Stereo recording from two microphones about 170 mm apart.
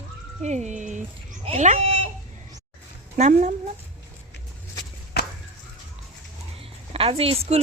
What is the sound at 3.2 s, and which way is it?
Speech, 40° right (ahead or behind).